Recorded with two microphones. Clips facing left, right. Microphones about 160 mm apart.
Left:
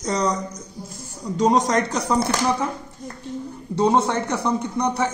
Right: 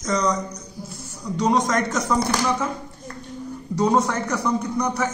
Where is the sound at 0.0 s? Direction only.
35° left (ahead or behind).